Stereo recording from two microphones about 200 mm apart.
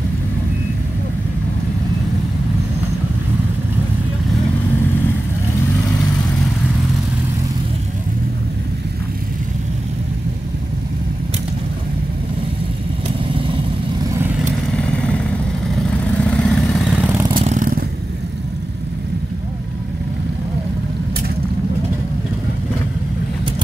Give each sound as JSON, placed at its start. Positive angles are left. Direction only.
{"t": 16.3, "sound": "vehicle", "side_deg": 0}
{"t": 17.4, "sound": "vehicle", "side_deg": -40}